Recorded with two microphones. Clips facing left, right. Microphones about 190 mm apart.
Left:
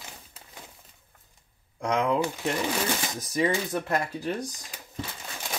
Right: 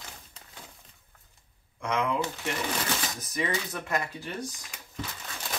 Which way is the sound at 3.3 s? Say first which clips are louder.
Left 6 dB; 30° left (ahead or behind).